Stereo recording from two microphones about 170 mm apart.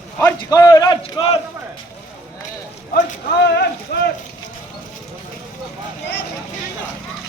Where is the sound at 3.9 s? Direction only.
70° left (ahead or behind).